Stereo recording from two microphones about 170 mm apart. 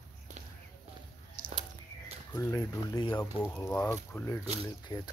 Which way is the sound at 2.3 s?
20° left (ahead or behind).